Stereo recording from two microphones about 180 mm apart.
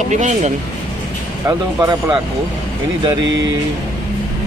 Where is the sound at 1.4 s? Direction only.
20° right (ahead or behind).